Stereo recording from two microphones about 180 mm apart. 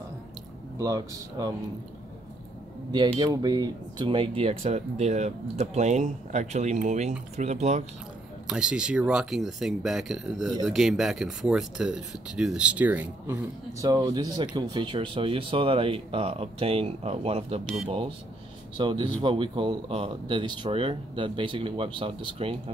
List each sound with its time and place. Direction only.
0.7 s speech: 20° right (ahead or behind)
2.9 s speech: 25° right (ahead or behind)
8.5 s speech: 5° right (ahead or behind); by 22.6 s 30° right (ahead or behind)